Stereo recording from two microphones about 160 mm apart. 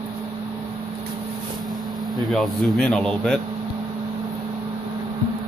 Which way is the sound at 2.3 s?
5° left (ahead or behind).